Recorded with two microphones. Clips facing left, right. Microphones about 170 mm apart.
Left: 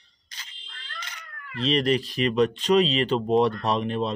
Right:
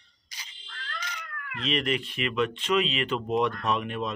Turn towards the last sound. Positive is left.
turn(degrees=30)  # may be behind; listen again after turning